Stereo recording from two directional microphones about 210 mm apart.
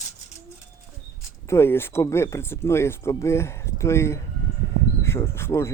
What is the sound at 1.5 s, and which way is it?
Speech, 10° left (ahead or behind).